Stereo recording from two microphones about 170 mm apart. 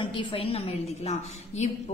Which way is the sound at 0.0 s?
30° left (ahead or behind).